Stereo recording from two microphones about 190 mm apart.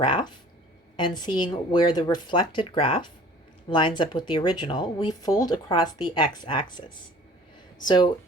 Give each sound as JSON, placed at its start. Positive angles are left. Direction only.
{"t": 0.0, "sound": "speech", "side_deg": 25}